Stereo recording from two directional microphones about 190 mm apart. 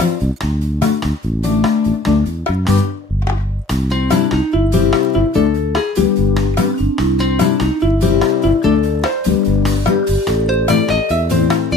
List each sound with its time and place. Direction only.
7.0 s music: centre (ahead or behind)